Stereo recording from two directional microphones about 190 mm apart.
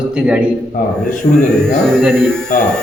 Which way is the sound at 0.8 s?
45° left (ahead or behind).